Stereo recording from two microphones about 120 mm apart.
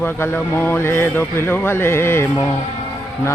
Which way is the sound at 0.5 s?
20° left (ahead or behind).